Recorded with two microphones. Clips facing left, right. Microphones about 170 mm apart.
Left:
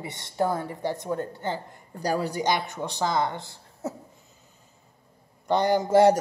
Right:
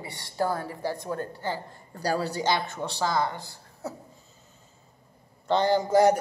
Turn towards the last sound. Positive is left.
turn(degrees=25)  # may be behind; listen again after turning